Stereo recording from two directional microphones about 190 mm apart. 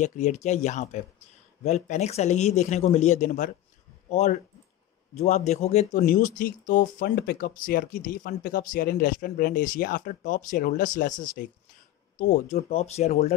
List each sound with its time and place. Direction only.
0.0 s speech: 40° left (ahead or behind)
5.9 s speech: 50° left (ahead or behind)
12.2 s speech: 40° left (ahead or behind)